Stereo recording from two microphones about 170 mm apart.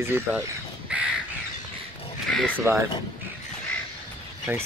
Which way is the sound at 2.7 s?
15° right (ahead or behind).